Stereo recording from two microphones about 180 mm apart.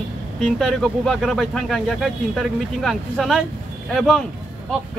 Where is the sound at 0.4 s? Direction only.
Centre (ahead or behind).